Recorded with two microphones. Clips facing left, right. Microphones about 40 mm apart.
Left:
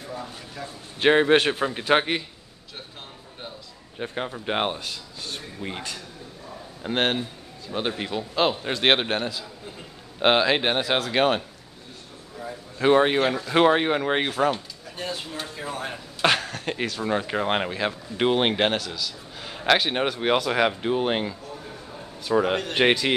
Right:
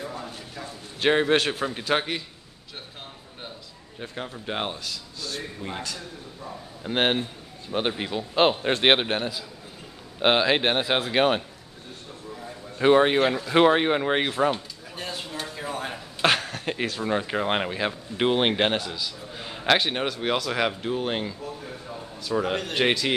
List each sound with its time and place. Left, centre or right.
1.0 s a man's voice: centre
4.0 s a man's voice: left
6.9 s speech: centre
8.4 s a man's voice: right
8.8 s speech: centre
12.7 s a man's voice: centre